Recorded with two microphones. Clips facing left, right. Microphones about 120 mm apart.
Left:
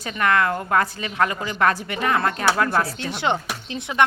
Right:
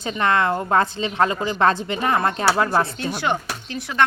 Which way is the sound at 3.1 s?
25° left (ahead or behind).